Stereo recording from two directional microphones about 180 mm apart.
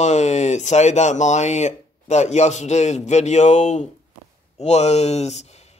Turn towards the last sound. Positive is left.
turn(degrees=35)  # may be behind; listen again after turning